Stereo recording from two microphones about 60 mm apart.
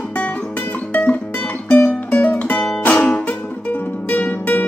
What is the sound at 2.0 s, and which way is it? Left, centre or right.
Music, left.